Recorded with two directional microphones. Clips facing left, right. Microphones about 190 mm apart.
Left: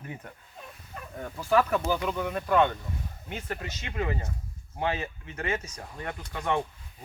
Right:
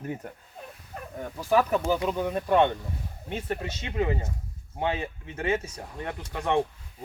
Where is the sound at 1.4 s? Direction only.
20° right (ahead or behind).